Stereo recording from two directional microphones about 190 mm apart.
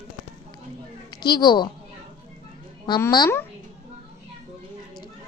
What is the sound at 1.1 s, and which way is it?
Speech, 20° left (ahead or behind).